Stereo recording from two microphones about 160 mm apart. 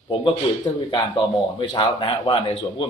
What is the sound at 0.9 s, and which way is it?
A man's voice, 30° left (ahead or behind).